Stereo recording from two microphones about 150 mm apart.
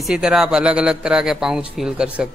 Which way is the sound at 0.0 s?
5° right (ahead or behind).